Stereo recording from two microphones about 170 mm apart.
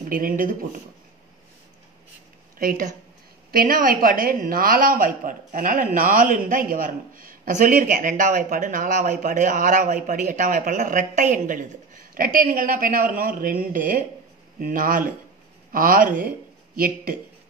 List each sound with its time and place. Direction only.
0.0 s speech: 55° right (ahead or behind)
2.6 s a woman's voice: 55° right (ahead or behind)